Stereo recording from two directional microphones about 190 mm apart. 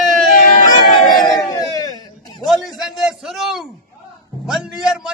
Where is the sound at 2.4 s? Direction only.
Centre (ahead or behind).